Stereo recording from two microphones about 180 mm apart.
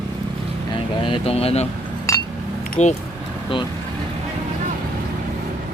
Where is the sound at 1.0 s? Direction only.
30° left (ahead or behind).